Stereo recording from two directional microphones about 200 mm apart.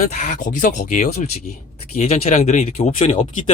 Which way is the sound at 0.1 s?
40° left (ahead or behind).